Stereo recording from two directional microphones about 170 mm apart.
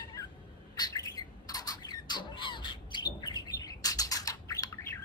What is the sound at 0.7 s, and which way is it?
Squawk, 25° left (ahead or behind).